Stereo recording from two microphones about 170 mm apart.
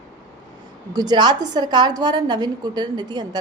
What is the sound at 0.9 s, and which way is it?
A woman's voice, 25° right (ahead or behind).